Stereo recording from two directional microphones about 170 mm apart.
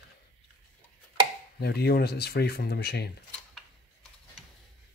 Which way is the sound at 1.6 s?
70° left (ahead or behind).